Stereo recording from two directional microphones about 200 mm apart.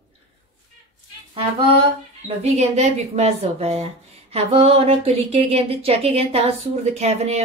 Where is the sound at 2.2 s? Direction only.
35° right (ahead or behind).